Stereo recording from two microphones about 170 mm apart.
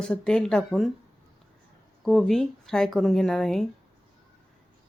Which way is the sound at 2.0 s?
Centre (ahead or behind).